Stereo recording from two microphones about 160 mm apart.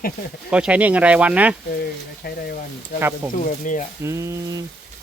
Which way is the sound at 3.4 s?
50° left (ahead or behind).